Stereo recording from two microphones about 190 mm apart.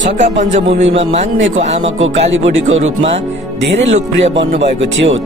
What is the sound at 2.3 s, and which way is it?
Speech, 80° right.